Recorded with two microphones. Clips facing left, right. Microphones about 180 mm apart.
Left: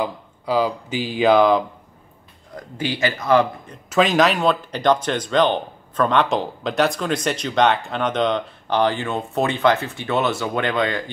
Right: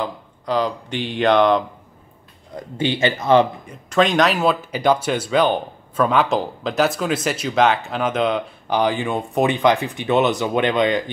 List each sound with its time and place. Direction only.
0.0 s speech: 5° left (ahead or behind)
2.5 s speech: 25° right (ahead or behind)
3.9 s speech: centre (ahead or behind); by 11.1 s 20° right (ahead or behind)